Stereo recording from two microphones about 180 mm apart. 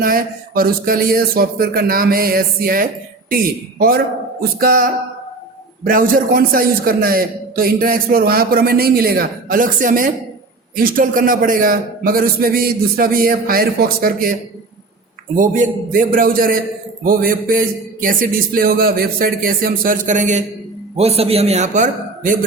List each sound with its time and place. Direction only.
0.0 s a man's voice: 55° right (ahead or behind)
15.4 s a man's voice: 45° right (ahead or behind)